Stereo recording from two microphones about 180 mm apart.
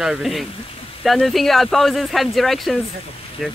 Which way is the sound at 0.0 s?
5° right (ahead or behind).